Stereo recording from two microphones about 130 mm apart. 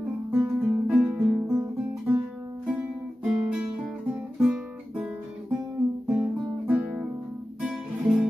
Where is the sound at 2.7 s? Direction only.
10° right (ahead or behind).